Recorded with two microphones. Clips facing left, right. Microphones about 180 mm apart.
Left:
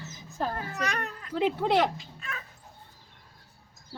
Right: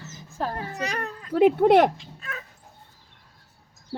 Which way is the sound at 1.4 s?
50° right (ahead or behind).